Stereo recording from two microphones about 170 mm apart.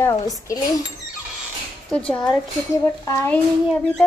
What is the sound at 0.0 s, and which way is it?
Dishes, 20° left (ahead or behind).